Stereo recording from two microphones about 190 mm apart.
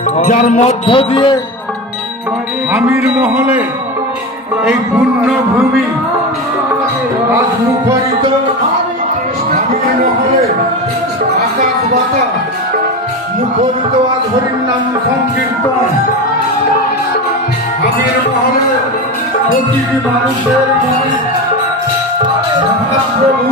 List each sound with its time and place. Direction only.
0.2 s a man's voice: 40° left (ahead or behind)
2.7 s a man's voice: 5° right (ahead or behind)
4.9 s speech: 15° right (ahead or behind)